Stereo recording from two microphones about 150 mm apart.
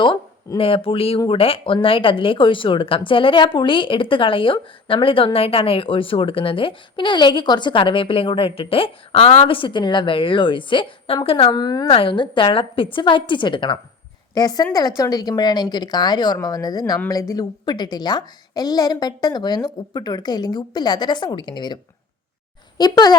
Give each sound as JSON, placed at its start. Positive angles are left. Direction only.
{"t": 0.5, "sound": "speech", "side_deg": 35}
{"t": 11.9, "sound": "a woman's voice", "side_deg": 40}
{"t": 22.8, "sound": "a woman's voice", "side_deg": 25}